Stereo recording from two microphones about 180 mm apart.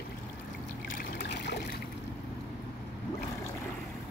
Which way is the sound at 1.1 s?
70° left (ahead or behind).